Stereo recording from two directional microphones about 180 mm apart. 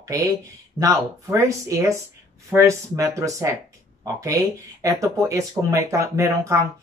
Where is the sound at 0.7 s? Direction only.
15° right (ahead or behind).